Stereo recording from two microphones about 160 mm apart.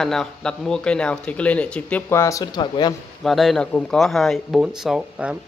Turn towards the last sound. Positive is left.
turn(degrees=-5)  # may be behind; listen again after turning